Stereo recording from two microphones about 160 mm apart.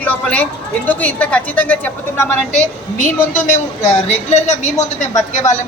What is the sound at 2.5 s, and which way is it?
A woman's voice, 45° left (ahead or behind).